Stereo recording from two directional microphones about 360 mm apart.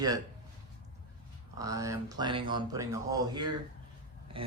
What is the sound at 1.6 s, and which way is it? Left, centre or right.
Speech, centre.